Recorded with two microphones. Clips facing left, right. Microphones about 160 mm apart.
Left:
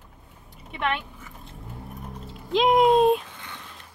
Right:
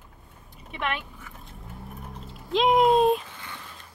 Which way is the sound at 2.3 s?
Centre (ahead or behind).